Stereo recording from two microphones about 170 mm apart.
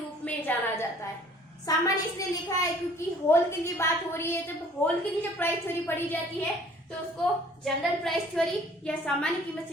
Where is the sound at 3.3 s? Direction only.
15° left (ahead or behind).